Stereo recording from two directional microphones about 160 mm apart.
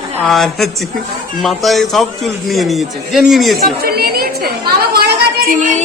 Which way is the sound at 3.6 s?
70° right (ahead or behind).